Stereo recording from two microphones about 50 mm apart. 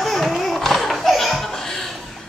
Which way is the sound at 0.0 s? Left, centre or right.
Centre.